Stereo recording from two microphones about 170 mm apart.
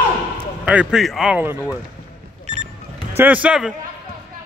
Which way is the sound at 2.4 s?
40° right (ahead or behind).